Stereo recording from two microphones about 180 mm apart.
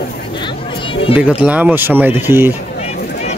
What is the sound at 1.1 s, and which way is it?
A man's voice, 5° right (ahead or behind).